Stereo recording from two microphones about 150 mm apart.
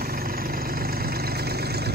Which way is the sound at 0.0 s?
80° right.